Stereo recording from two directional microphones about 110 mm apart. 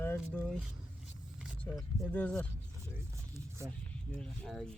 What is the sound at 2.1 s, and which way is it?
Speech, 10° left (ahead or behind).